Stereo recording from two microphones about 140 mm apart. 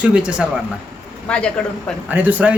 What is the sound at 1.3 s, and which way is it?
Speech, 5° left (ahead or behind).